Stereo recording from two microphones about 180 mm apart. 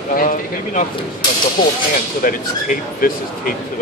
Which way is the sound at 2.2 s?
50° left (ahead or behind).